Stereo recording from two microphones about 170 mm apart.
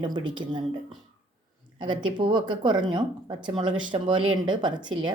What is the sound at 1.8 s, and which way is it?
Speech, 25° right (ahead or behind).